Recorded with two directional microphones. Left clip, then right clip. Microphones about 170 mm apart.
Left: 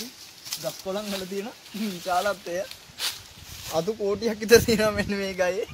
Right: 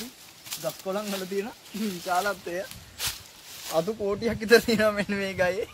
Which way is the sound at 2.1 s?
50° left (ahead or behind).